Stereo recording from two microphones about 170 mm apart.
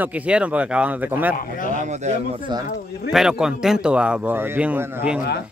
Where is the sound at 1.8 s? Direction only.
45° right (ahead or behind).